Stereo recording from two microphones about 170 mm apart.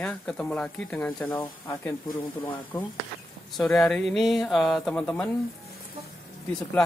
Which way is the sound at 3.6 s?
5° left (ahead or behind).